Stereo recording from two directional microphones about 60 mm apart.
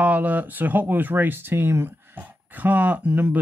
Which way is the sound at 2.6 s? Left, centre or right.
Right.